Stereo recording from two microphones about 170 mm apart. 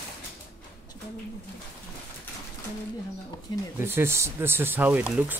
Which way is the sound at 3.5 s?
25° left (ahead or behind).